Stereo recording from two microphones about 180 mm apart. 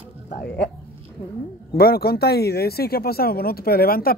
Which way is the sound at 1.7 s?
60° left (ahead or behind).